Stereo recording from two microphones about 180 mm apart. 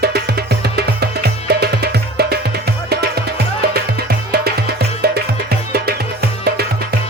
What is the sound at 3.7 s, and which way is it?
Music, 60° right (ahead or behind).